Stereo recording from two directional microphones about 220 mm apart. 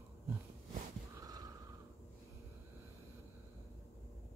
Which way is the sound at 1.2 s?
15° right (ahead or behind).